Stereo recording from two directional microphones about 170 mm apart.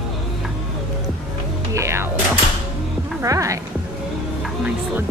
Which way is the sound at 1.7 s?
15° right (ahead or behind).